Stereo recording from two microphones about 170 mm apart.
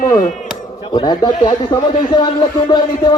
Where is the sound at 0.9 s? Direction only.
25° left (ahead or behind).